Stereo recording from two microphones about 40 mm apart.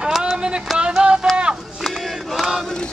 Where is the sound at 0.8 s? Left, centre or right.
Right.